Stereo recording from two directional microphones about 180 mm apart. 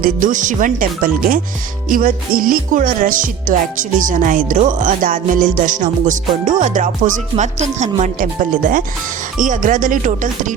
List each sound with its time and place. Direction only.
0.0 s speech: 45° right (ahead or behind)